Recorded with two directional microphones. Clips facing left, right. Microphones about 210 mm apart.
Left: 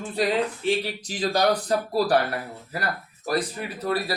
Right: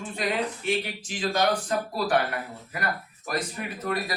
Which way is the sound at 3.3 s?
35° left (ahead or behind).